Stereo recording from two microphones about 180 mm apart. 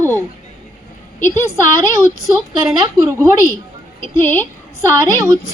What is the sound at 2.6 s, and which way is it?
Speech, 20° right (ahead or behind).